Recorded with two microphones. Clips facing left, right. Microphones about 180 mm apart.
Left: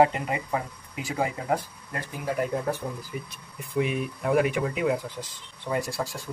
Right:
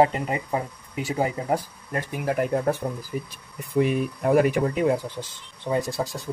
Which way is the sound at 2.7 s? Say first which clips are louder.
Right 5 dB; 55° right (ahead or behind).